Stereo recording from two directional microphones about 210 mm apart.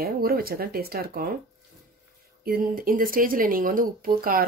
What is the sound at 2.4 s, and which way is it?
Speech, 45° right (ahead or behind).